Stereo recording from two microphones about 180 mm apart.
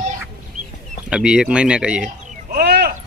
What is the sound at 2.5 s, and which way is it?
Sheep, 55° right (ahead or behind).